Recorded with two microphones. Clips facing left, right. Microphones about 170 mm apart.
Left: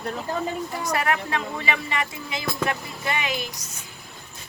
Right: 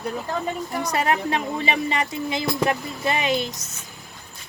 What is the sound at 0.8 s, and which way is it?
Speech, 20° right (ahead or behind).